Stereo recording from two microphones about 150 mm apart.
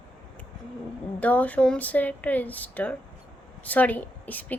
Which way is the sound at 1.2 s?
10° left (ahead or behind).